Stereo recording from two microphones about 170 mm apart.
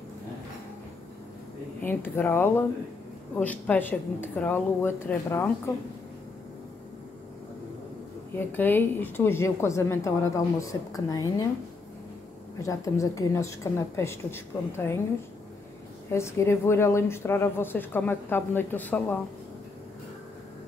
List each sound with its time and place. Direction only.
1.8 s a woman's voice: 10° left (ahead or behind)
8.4 s a woman's voice: 10° left (ahead or behind)
12.6 s a woman's voice: 20° left (ahead or behind)
16.1 s a woman's voice: 15° left (ahead or behind)